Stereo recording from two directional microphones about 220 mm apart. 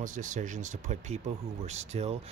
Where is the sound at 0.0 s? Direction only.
35° right (ahead or behind).